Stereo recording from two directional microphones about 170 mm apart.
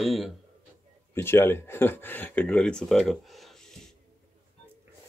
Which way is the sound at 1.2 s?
15° left (ahead or behind).